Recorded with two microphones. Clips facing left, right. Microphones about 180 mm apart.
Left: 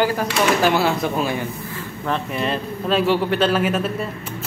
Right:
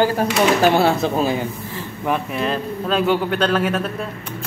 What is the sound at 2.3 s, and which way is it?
A man's voice, centre (ahead or behind).